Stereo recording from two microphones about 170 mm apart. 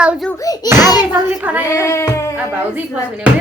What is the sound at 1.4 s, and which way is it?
Speech, 10° right (ahead or behind).